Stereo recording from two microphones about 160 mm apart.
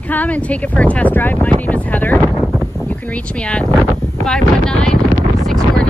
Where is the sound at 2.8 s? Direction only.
10° left (ahead or behind).